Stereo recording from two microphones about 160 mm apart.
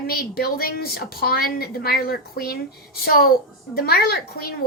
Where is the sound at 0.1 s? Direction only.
70° left (ahead or behind).